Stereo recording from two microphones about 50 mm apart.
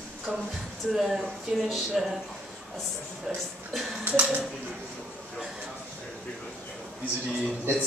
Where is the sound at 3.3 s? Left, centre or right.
Centre.